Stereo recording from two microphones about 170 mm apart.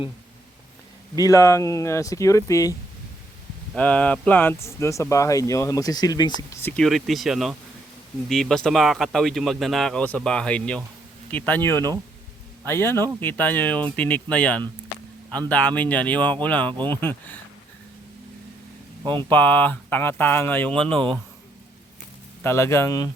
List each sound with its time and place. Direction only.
1.1 s speech: 20° left (ahead or behind)
3.8 s speech: 10° left (ahead or behind)
6.7 s speech: centre (ahead or behind)
19.3 s speech: 10° left (ahead or behind)
22.4 s speech: 15° left (ahead or behind)